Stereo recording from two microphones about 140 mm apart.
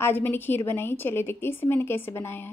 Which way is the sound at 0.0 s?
15° left (ahead or behind).